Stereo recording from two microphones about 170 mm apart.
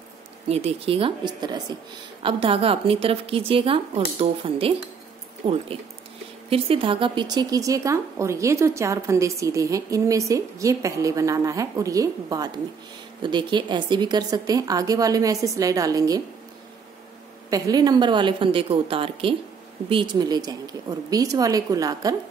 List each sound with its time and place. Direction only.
0.5 s a woman's voice: 35° right (ahead or behind); by 16.2 s 20° right (ahead or behind)
17.5 s a woman's voice: 20° right (ahead or behind)